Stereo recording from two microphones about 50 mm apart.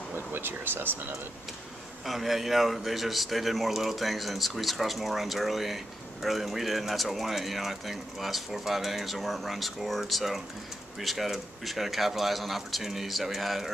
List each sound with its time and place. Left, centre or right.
0.1 s speech: right
2.0 s speech: centre